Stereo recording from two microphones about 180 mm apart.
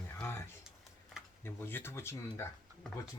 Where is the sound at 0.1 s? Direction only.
15° left (ahead or behind).